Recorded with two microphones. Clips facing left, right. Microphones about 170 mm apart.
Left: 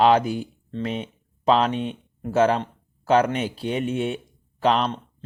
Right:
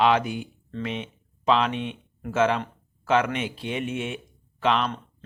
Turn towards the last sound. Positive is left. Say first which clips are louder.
# left 3 dB
turn(degrees=40)  # may be behind; listen again after turning